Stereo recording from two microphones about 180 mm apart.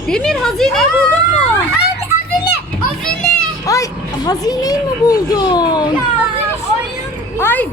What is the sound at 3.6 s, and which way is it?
A child's voice, 20° left (ahead or behind).